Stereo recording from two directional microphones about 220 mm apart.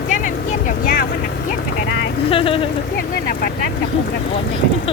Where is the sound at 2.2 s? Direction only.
25° left (ahead or behind).